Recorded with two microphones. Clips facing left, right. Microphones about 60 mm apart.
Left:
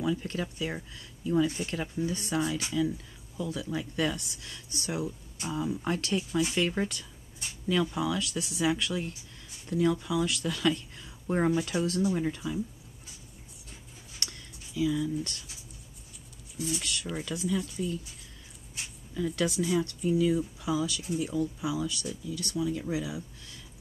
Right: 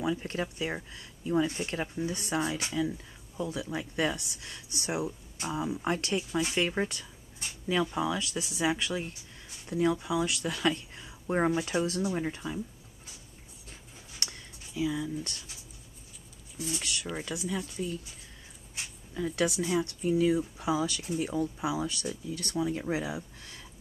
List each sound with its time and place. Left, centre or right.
0.0 s speech: right
11.1 s speech: centre
14.2 s a sound: right
16.5 s speech: right
17.5 s speech: centre
19.1 s speech: centre
20.0 s speech: right